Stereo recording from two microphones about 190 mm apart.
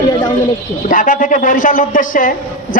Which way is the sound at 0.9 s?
45° left (ahead or behind).